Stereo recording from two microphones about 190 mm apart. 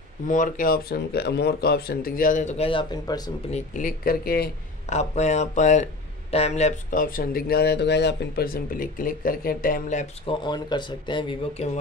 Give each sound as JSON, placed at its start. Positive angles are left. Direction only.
{"t": 0.3, "sound": "speech", "side_deg": 45}
{"t": 3.5, "sound": "speech", "side_deg": 45}
{"t": 4.8, "sound": "speech", "side_deg": 35}
{"t": 10.4, "sound": "speech", "side_deg": 25}